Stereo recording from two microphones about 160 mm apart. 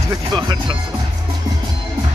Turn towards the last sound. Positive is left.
turn(degrees=-25)  # may be behind; listen again after turning